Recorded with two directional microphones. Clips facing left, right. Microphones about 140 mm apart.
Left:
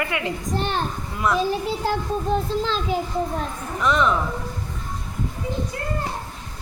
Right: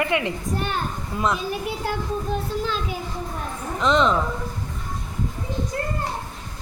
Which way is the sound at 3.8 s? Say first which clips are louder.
Right 1 dB; 20° right (ahead or behind).